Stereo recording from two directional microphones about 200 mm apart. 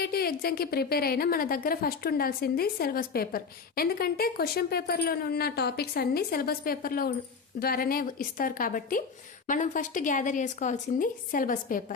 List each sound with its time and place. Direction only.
0.0 s a woman's voice: 50° left (ahead or behind)